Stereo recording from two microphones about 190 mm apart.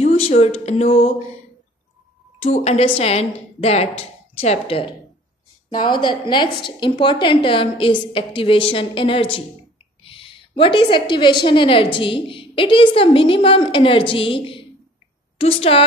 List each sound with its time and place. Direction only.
0.0 s speech: 35° left (ahead or behind)
2.4 s a woman's voice: 35° left (ahead or behind)